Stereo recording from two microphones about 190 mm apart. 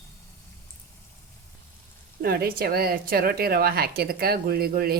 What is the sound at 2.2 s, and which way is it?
A woman's voice, 55° right (ahead or behind).